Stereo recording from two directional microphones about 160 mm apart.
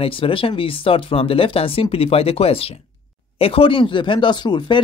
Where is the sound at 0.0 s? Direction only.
35° left (ahead or behind).